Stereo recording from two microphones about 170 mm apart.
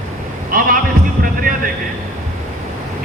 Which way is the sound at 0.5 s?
55° right (ahead or behind).